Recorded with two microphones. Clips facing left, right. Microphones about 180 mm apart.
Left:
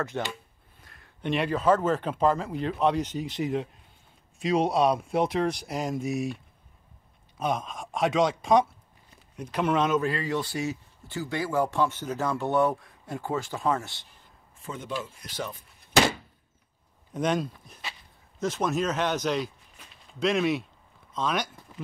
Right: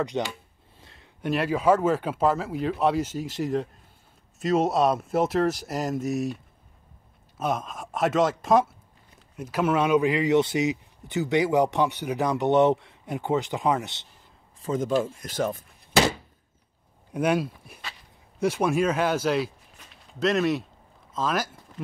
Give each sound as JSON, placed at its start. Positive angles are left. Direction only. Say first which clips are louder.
{"t": 0.0, "sound": "speech", "louder": "right 4 dB", "side_deg": -15}
{"t": 0.7, "sound": "a sound", "louder": "right 3 dB", "side_deg": -25}
{"t": 1.2, "sound": "speech", "louder": "right 2 dB", "side_deg": -5}
{"t": 14.6, "sound": "speech", "louder": "right 10 dB", "side_deg": -40}
{"t": 17.1, "sound": "speech", "louder": "right 3 dB", "side_deg": -10}